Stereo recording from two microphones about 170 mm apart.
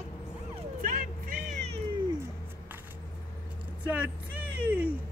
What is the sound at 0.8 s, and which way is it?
Vehicle, 55° right (ahead or behind).